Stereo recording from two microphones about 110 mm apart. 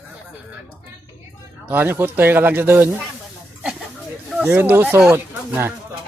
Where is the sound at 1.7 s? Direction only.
20° right (ahead or behind).